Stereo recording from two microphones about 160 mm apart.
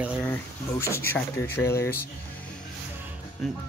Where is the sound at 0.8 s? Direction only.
15° left (ahead or behind).